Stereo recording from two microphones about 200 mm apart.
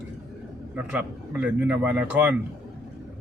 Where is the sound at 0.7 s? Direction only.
10° right (ahead or behind).